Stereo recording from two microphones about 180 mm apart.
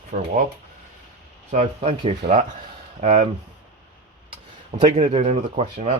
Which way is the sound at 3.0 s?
40° right (ahead or behind).